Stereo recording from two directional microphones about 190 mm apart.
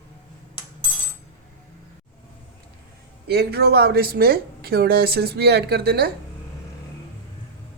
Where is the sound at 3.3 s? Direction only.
55° right (ahead or behind).